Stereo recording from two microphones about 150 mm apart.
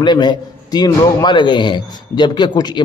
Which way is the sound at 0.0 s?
30° left (ahead or behind).